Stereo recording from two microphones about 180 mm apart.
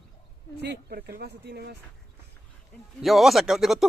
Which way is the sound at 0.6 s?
65° right (ahead or behind).